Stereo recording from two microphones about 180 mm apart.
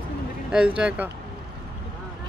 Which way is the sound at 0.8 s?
5° right (ahead or behind).